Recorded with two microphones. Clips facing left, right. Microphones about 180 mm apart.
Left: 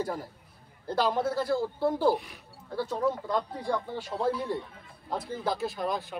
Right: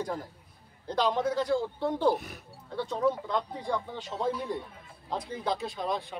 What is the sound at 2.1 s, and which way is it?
Speech, 45° right (ahead or behind).